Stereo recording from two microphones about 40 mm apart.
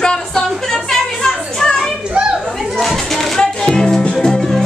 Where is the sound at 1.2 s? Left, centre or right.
Centre.